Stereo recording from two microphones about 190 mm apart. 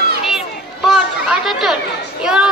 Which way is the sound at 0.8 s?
5° right (ahead or behind).